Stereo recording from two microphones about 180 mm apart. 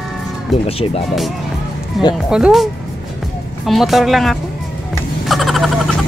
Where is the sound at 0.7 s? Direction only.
35° left (ahead or behind).